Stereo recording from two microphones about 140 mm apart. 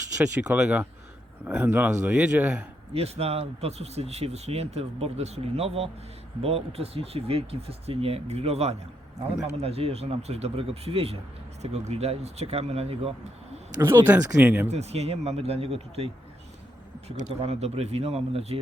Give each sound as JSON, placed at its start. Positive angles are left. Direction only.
{"t": 0.2, "sound": "speech", "side_deg": -5}
{"t": 2.9, "sound": "speech", "side_deg": -45}
{"t": 13.7, "sound": "speech", "side_deg": -15}
{"t": 14.7, "sound": "speech", "side_deg": -50}
{"t": 17.1, "sound": "speech", "side_deg": -50}